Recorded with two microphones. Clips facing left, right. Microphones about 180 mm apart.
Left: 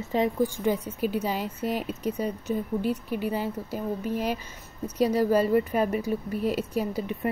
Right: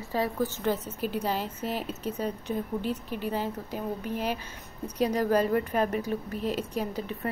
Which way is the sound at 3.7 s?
45° left (ahead or behind).